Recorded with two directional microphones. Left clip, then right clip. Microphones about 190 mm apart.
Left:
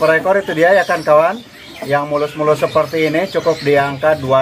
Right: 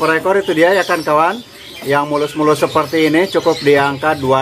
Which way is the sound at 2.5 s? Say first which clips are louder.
Even; 20° right (ahead or behind).